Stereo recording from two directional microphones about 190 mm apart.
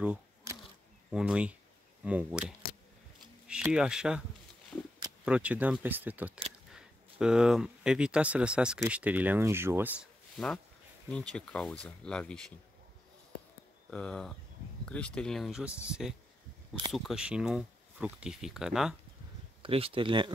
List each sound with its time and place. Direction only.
0.0 s insect: 5° right (ahead or behind)
1.1 s speech: 5° right (ahead or behind)
5.2 s speech: 5° right (ahead or behind)
10.3 s speech: 5° left (ahead or behind)
13.8 s speech: 5° left (ahead or behind)
19.6 s speech: 30° right (ahead or behind)